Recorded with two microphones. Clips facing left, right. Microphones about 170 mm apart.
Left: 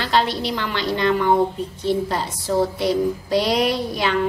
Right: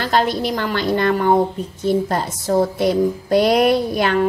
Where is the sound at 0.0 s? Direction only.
45° right (ahead or behind).